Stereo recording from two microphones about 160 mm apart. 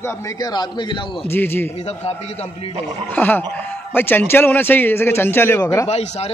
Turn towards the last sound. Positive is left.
turn(degrees=45)  # may be behind; listen again after turning